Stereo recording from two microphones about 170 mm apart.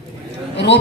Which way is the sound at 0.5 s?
90° left.